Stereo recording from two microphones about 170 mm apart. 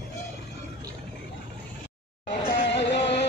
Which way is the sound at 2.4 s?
90° left.